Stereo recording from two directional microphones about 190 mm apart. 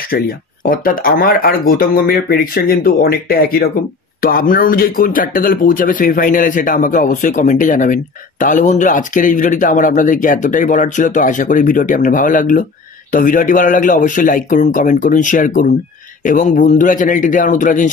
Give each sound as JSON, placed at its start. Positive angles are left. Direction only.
{"t": 0.1, "sound": "speech", "side_deg": 55}